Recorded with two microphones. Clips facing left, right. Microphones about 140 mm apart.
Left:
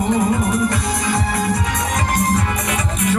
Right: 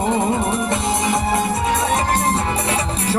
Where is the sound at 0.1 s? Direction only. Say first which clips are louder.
Left 3 dB; 25° right (ahead or behind).